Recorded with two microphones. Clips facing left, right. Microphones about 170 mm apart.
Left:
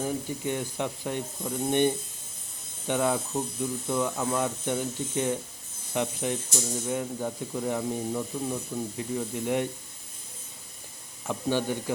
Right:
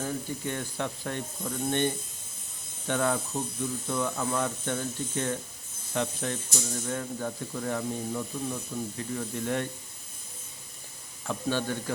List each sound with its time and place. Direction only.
0.0 s speech: 15° left (ahead or behind)
11.3 s speech: 15° left (ahead or behind)